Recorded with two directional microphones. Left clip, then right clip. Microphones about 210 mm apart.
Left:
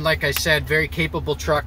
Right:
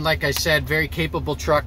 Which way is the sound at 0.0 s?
40° right (ahead or behind).